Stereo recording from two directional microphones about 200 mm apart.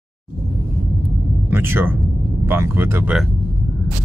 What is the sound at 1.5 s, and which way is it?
Speech, 10° right (ahead or behind).